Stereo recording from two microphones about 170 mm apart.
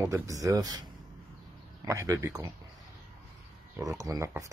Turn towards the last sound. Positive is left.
turn(degrees=-20)  # may be behind; listen again after turning